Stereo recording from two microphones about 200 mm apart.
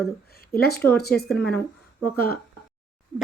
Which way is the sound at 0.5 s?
50° left (ahead or behind).